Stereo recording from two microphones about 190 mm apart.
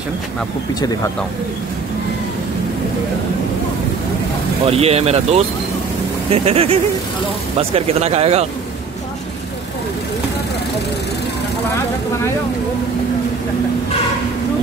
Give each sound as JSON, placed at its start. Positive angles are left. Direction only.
{"t": 4.6, "sound": "speech", "side_deg": -30}